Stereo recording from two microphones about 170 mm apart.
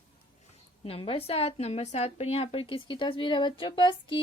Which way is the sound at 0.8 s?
35° left (ahead or behind).